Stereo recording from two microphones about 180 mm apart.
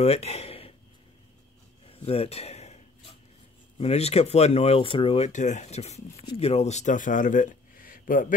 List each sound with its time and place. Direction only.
0.0 s speech: 35° left (ahead or behind)
1.9 s a sound: 35° left (ahead or behind)
3.7 s speech: 35° left (ahead or behind)